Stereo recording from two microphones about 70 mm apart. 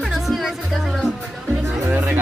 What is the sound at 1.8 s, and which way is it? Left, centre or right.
Music, right.